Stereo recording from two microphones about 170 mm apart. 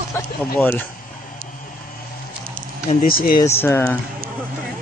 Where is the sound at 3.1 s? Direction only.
60° left (ahead or behind).